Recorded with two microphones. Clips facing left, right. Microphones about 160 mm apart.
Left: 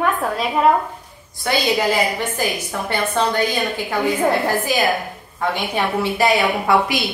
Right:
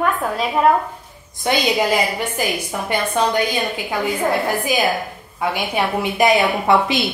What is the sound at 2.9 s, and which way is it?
Speech, 15° right (ahead or behind).